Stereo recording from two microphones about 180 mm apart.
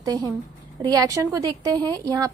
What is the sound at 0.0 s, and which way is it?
A woman's voice, 20° right (ahead or behind).